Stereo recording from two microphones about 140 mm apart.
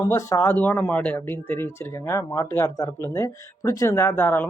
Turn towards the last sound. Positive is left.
turn(degrees=15)  # may be behind; listen again after turning